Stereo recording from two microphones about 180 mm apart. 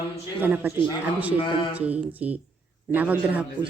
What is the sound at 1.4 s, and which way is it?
Speech, 25° left (ahead or behind).